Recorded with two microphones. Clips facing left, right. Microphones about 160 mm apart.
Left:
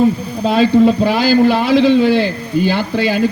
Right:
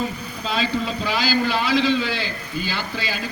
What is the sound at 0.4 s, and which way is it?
A man's voice, 55° left (ahead or behind).